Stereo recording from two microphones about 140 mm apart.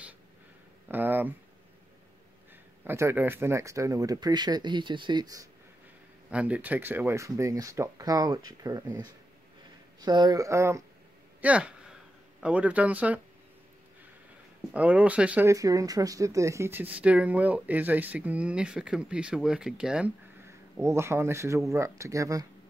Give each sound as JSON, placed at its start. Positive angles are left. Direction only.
{"t": 0.8, "sound": "a sound", "side_deg": -15}
{"t": 2.8, "sound": "speech", "side_deg": -15}
{"t": 6.3, "sound": "speech", "side_deg": -10}
{"t": 11.4, "sound": "speech", "side_deg": -10}
{"t": 14.7, "sound": "speech", "side_deg": -10}
{"t": 15.4, "sound": "speech", "side_deg": -25}
{"t": 20.4, "sound": "speech", "side_deg": -20}